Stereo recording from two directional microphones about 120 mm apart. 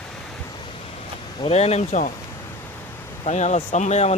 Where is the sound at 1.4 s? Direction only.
60° left (ahead or behind); by 2.1 s 80° left.